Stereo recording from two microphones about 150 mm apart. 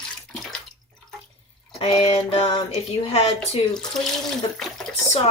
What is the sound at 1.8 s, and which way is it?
Speech, 45° left (ahead or behind).